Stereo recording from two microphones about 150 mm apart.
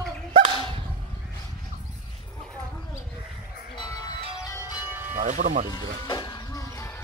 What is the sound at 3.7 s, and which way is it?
Music, 25° left (ahead or behind).